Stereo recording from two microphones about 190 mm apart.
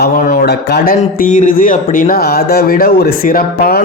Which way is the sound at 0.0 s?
55° left (ahead or behind).